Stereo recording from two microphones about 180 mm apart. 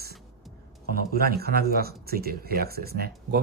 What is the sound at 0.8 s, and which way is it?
Speech, 60° right (ahead or behind).